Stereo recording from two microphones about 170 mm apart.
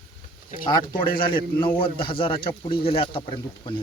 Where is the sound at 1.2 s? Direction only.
30° left (ahead or behind).